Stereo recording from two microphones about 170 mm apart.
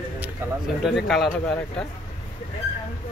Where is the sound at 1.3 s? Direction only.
5° left (ahead or behind).